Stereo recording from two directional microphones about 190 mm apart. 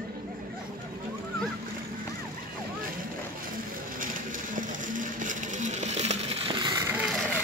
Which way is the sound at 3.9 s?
45° right (ahead or behind).